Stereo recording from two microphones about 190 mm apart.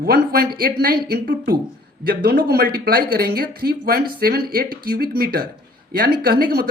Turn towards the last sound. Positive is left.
turn(degrees=-50)  # may be behind; listen again after turning